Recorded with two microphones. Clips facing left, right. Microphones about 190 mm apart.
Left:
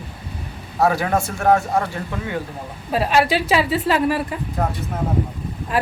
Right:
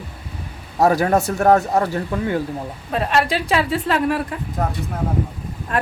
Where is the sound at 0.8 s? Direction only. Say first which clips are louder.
Right 3 dB; 40° right (ahead or behind).